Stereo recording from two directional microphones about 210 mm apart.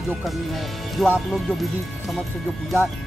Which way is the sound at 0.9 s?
5° right (ahead or behind).